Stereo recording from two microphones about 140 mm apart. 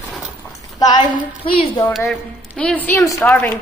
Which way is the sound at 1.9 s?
Centre (ahead or behind).